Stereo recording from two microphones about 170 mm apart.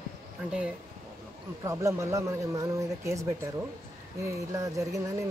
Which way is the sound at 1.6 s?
15° right (ahead or behind).